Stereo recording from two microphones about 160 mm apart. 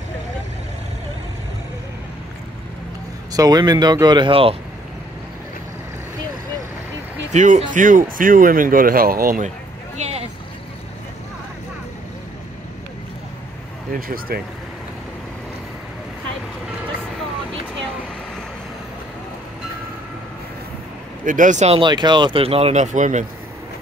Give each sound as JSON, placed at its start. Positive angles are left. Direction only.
{"t": 3.3, "sound": "speech", "side_deg": -25}
{"t": 7.3, "sound": "speech", "side_deg": -45}
{"t": 9.9, "sound": "a sound", "side_deg": -40}
{"t": 13.9, "sound": "speech", "side_deg": -65}
{"t": 21.3, "sound": "speech", "side_deg": -50}
{"t": 21.7, "sound": "speech", "side_deg": -30}